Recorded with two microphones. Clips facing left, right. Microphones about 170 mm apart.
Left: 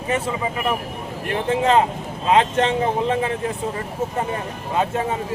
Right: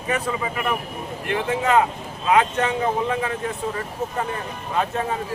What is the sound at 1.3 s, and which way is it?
Speech, 30° left (ahead or behind).